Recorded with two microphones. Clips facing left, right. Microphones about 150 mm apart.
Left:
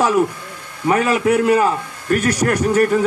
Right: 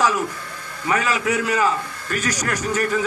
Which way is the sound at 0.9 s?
55° left (ahead or behind).